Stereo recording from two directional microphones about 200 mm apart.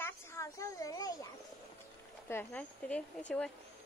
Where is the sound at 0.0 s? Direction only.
15° left (ahead or behind).